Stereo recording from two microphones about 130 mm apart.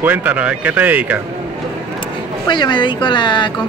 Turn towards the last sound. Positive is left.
turn(degrees=35)  # may be behind; listen again after turning